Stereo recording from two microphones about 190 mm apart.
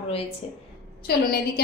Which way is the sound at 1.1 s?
55° left (ahead or behind).